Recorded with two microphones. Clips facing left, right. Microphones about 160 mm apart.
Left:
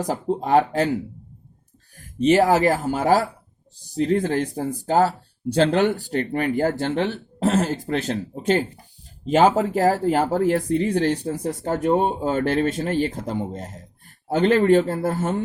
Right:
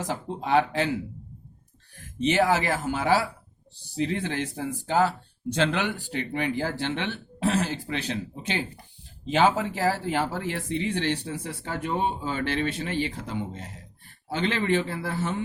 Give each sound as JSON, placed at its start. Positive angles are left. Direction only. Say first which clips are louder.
{"t": 0.0, "sound": "speech", "louder": "left 7 dB", "side_deg": 40}
{"t": 2.1, "sound": "speech", "louder": "left 6 dB", "side_deg": 40}